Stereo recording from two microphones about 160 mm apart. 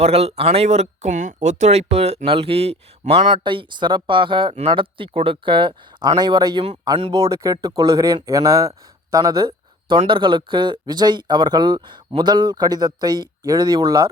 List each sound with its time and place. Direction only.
0.0 s speech: 40° right (ahead or behind)
3.3 s speech: 30° right (ahead or behind)